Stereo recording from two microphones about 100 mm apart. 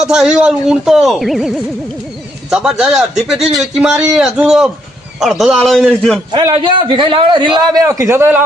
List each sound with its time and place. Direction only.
0.0 s speech: 10° right (ahead or behind)
6.5 s a man's voice: 60° right (ahead or behind); by 8.4 s 20° right (ahead or behind)